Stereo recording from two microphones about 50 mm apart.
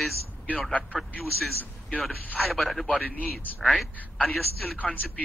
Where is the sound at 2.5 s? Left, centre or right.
Centre.